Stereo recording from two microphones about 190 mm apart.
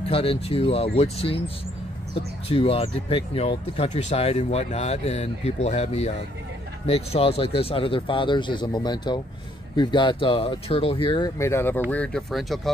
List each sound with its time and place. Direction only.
0.1 s speech: 30° left (ahead or behind)
2.5 s speech: 30° left (ahead or behind); by 12.7 s centre (ahead or behind)